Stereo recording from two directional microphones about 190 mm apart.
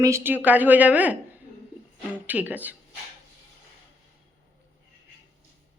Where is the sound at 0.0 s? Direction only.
15° right (ahead or behind).